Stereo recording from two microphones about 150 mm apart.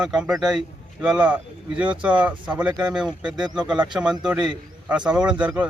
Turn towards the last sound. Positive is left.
turn(degrees=-10)  # may be behind; listen again after turning